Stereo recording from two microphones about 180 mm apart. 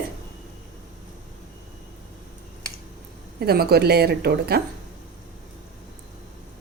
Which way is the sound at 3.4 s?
60° right (ahead or behind).